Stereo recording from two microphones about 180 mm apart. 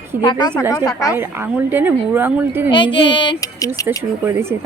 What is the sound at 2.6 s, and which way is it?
Speech, 25° left (ahead or behind).